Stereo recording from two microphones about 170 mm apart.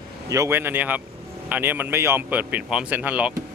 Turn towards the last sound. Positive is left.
turn(degrees=-10)  # may be behind; listen again after turning